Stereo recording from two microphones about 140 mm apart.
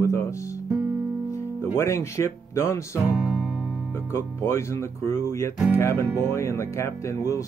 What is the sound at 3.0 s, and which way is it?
Music, 10° right (ahead or behind).